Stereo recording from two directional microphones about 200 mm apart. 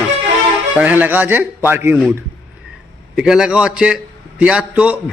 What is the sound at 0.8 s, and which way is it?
A man's voice, 10° right (ahead or behind).